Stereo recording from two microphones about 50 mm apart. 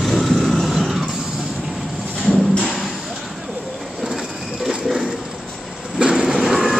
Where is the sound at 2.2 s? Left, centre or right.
Centre.